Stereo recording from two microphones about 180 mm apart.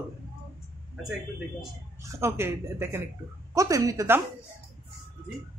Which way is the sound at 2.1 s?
15° right (ahead or behind).